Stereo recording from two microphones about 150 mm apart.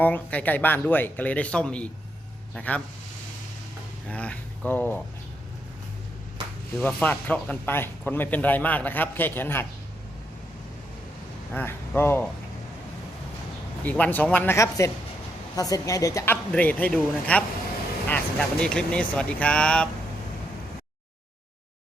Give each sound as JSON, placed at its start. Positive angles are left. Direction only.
{"t": 0.0, "sound": "speech", "side_deg": 10}
{"t": 4.1, "sound": "speech", "side_deg": 10}
{"t": 6.7, "sound": "speech", "side_deg": 10}
{"t": 11.5, "sound": "speech", "side_deg": 15}
{"t": 13.8, "sound": "a woman's voice", "side_deg": 10}